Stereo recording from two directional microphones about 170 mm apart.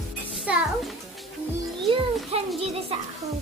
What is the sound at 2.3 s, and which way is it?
Music, 35° right (ahead or behind).